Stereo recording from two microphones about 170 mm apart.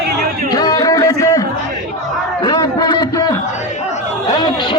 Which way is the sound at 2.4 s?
20° left (ahead or behind).